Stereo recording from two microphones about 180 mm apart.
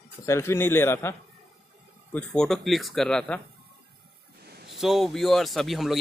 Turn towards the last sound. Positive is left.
turn(degrees=0)  # may be behind; listen again after turning